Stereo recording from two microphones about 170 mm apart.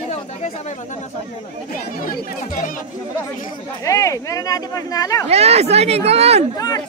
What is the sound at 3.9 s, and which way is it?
Speech, 20° left (ahead or behind).